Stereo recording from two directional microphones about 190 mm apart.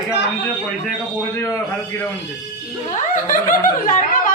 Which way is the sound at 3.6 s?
45° left (ahead or behind).